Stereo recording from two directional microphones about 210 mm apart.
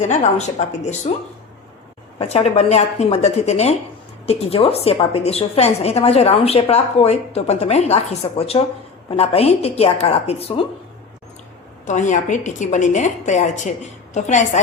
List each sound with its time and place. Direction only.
0.0 s a woman's voice: 35° left (ahead or behind)
2.1 s a woman's voice: 30° left (ahead or behind)
11.9 s a woman's voice: 35° left (ahead or behind)